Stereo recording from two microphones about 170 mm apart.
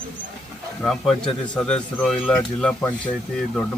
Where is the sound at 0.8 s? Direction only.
5° left (ahead or behind).